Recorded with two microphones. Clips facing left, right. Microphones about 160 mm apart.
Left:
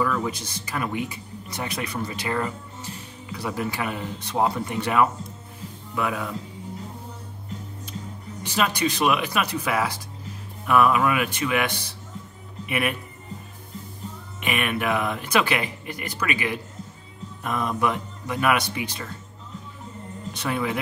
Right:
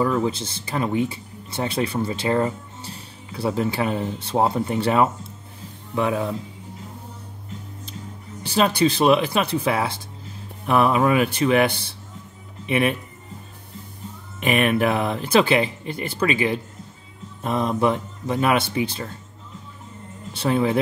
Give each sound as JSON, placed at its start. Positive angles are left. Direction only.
{"t": 0.0, "sound": "speech", "side_deg": -25}
{"t": 8.4, "sound": "speech", "side_deg": -35}
{"t": 14.4, "sound": "speech", "side_deg": -35}
{"t": 20.3, "sound": "speech", "side_deg": -30}